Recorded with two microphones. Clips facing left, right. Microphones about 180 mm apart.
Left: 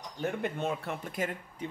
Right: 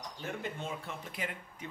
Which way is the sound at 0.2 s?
65° left (ahead or behind).